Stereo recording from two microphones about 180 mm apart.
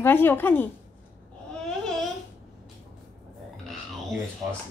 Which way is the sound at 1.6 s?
5° left (ahead or behind).